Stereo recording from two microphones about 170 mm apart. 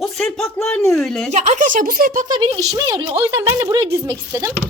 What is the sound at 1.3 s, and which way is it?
Speech, 45° right (ahead or behind).